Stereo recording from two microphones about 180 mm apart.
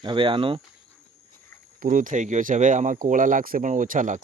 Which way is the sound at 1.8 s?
50° right (ahead or behind).